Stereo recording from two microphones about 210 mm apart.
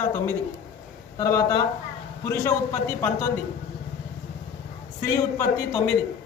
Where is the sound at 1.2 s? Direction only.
15° left (ahead or behind).